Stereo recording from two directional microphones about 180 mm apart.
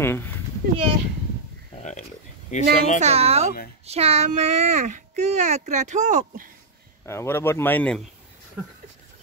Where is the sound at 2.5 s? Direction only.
40° left (ahead or behind).